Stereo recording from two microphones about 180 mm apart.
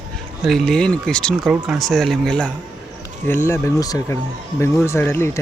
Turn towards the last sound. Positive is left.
turn(degrees=15)  # may be behind; listen again after turning